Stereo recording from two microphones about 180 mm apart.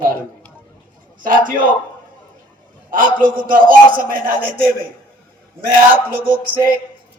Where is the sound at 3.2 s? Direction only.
50° right (ahead or behind).